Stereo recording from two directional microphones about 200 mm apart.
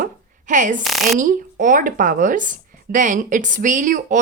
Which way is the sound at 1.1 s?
40° right (ahead or behind).